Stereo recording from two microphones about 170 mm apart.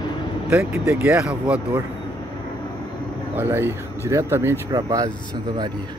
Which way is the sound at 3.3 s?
15° right (ahead or behind).